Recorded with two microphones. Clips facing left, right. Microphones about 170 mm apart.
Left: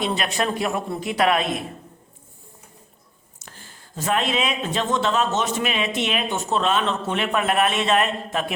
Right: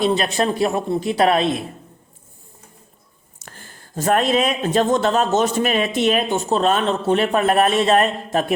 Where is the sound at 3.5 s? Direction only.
50° right (ahead or behind).